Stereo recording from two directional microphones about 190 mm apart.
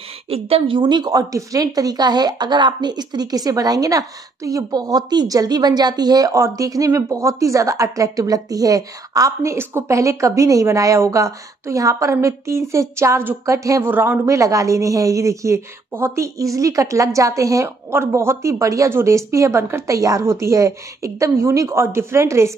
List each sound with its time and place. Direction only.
0.3 s a woman's voice: 30° right (ahead or behind); by 22.5 s 15° right (ahead or behind)